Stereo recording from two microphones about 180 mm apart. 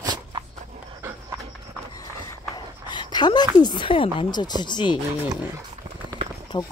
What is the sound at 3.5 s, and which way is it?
Speech, 25° left (ahead or behind).